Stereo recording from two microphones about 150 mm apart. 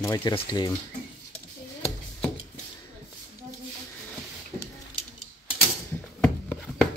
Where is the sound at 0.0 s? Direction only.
25° left (ahead or behind).